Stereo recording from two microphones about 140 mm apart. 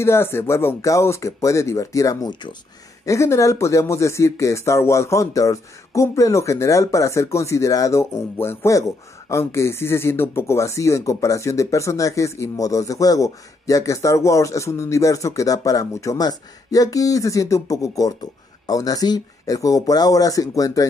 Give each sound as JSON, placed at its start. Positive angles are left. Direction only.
{"t": 0.0, "sound": "speech", "side_deg": 15}